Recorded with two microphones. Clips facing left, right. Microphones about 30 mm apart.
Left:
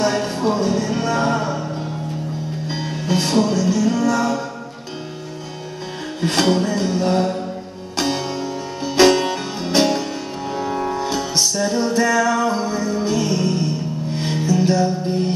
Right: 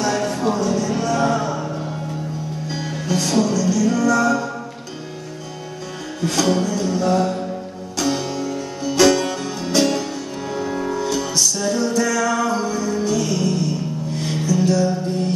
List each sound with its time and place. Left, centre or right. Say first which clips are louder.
0.0 s music: left 1 dB; left
2.7 s music: left 1 dB; left
6.2 s music: left 1 dB; left